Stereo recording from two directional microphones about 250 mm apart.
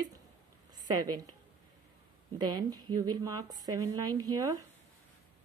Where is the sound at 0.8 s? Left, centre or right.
Right.